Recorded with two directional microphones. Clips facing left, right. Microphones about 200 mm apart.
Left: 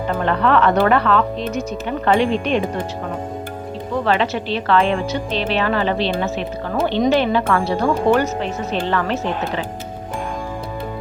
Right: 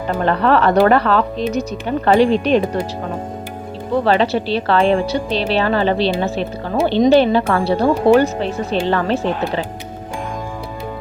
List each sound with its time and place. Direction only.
0.3 s speech: 35° right (ahead or behind)
4.0 s speech: 35° right (ahead or behind)